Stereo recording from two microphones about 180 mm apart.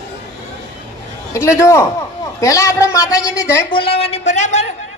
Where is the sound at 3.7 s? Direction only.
30° left (ahead or behind).